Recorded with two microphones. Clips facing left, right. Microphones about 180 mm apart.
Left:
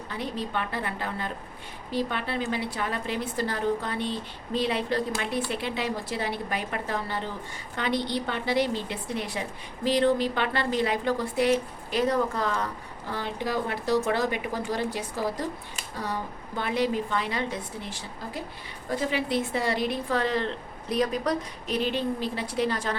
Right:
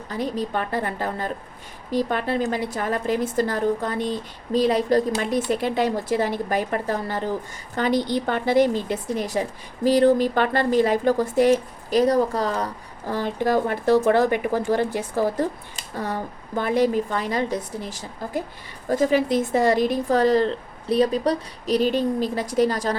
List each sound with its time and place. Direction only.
0.1 s a woman's voice: 40° right (ahead or behind)